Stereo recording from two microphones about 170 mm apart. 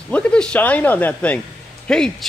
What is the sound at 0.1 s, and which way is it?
A man's voice, 5° left (ahead or behind).